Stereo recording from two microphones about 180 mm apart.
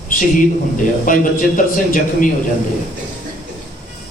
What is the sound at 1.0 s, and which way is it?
A man's voice, 50° left (ahead or behind).